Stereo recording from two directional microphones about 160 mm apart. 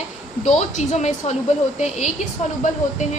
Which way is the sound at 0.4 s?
45° left (ahead or behind).